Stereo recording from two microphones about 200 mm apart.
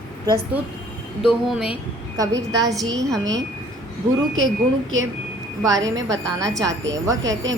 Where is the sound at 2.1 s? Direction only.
20° right (ahead or behind).